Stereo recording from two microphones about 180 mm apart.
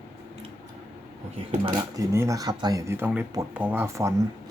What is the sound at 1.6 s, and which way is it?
Speech, 20° right (ahead or behind).